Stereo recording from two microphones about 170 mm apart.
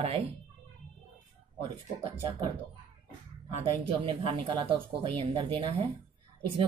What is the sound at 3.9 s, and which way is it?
Speech, 30° right (ahead or behind).